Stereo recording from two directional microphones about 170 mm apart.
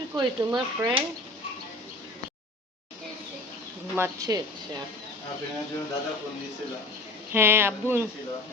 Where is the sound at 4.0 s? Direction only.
20° right (ahead or behind).